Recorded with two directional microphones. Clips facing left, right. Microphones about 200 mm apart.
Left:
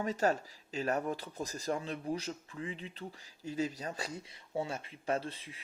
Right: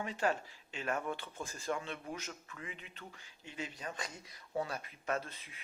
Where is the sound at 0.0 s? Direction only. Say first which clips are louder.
Left 4 dB; 40° left (ahead or behind).